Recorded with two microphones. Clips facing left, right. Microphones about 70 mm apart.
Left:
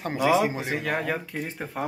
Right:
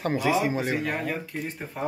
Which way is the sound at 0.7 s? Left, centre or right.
Left.